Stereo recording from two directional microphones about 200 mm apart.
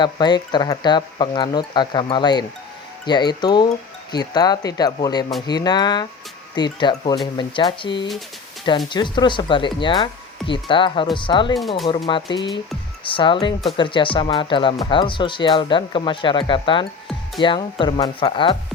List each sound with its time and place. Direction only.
0.0 s speech: 20° left (ahead or behind)